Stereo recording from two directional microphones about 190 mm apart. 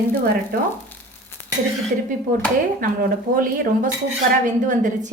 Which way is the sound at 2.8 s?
45° right (ahead or behind).